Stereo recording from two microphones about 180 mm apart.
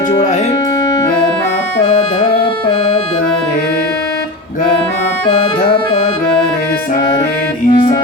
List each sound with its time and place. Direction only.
7.7 s music: 25° left (ahead or behind)